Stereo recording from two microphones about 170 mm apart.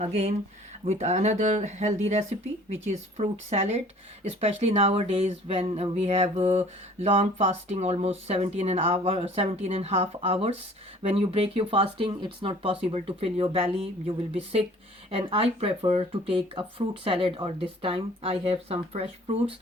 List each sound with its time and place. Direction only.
0.0 s speech: 40° right (ahead or behind)
15.1 s speech: 35° right (ahead or behind)